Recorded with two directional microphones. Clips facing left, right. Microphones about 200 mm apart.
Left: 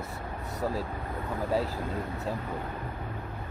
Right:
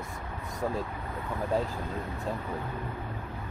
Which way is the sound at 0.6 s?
5° left (ahead or behind).